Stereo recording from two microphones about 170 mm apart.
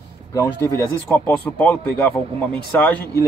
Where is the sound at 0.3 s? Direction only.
20° left (ahead or behind).